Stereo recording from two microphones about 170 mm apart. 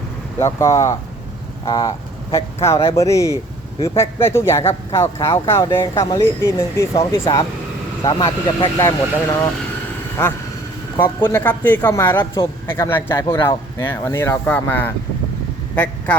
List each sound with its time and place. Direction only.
0.3 s speech: 15° left (ahead or behind)
11.0 s speech: 15° left (ahead or behind)
12.2 s speech: 25° left (ahead or behind)
12.6 s speech: 15° left (ahead or behind)